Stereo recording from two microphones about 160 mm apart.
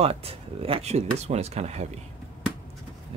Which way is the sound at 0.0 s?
40° right (ahead or behind).